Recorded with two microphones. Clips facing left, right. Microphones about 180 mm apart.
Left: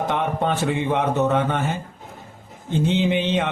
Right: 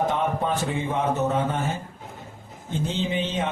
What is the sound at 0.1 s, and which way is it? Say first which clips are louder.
A man's voice: left 2 dB; 70° left (ahead or behind).